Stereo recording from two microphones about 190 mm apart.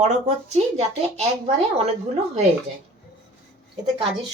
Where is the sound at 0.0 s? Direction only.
35° right (ahead or behind).